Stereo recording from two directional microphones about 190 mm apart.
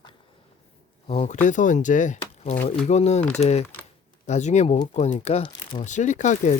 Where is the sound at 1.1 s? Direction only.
35° left (ahead or behind).